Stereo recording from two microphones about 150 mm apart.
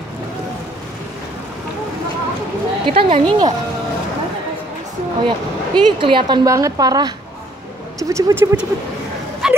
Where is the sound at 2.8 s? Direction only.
40° right (ahead or behind).